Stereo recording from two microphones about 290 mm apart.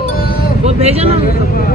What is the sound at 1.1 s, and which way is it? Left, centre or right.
Speech, left.